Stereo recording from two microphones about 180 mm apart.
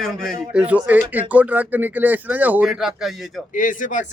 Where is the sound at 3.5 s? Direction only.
45° left (ahead or behind).